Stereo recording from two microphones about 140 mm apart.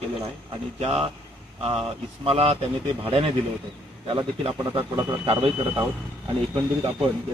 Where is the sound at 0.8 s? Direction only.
45° right (ahead or behind).